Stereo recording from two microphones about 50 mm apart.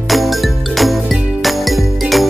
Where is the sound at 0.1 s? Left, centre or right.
Centre.